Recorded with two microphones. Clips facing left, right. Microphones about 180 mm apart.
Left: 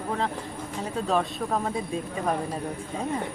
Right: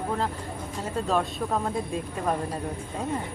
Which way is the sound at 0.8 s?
Centre (ahead or behind).